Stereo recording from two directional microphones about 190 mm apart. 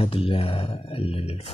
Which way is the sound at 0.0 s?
30° left (ahead or behind).